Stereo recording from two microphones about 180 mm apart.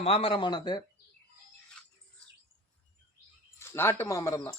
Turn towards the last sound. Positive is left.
turn(degrees=20)  # may be behind; listen again after turning